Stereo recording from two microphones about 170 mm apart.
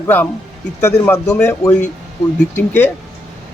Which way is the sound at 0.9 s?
15° left (ahead or behind).